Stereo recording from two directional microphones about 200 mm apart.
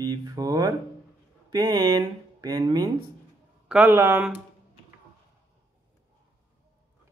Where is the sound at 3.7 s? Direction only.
10° right (ahead or behind).